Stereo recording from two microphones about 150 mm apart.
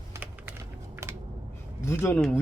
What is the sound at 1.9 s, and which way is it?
Speech, 15° left (ahead or behind).